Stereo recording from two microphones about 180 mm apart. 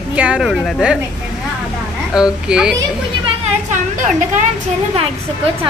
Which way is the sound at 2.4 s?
5° right (ahead or behind).